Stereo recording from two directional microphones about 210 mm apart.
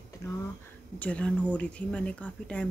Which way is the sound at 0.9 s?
5° left (ahead or behind).